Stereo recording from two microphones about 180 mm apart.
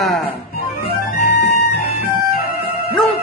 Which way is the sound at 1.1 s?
60° left (ahead or behind).